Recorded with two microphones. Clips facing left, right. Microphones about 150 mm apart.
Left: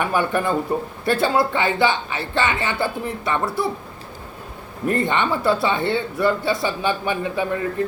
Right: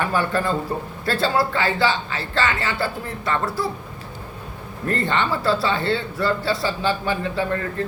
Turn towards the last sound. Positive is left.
turn(degrees=15)  # may be behind; listen again after turning